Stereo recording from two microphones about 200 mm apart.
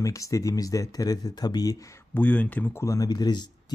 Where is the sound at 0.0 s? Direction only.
15° left (ahead or behind).